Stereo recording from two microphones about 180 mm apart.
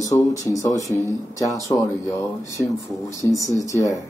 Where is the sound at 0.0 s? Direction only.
20° left (ahead or behind).